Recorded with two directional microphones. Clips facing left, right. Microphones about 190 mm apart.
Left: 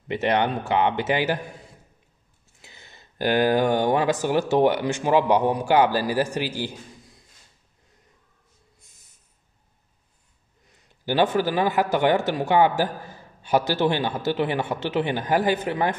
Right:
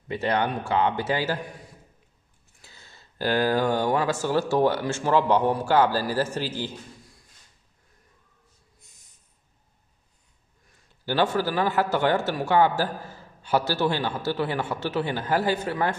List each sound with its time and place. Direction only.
0.1 s a man's voice: 20° left (ahead or behind)
2.6 s a man's voice: 20° left (ahead or behind)
8.7 s snort: centre (ahead or behind)
10.7 s a man's voice: 15° left (ahead or behind)